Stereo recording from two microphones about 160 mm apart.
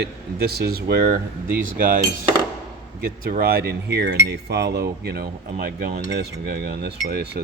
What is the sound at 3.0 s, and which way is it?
Speech, 65° right (ahead or behind).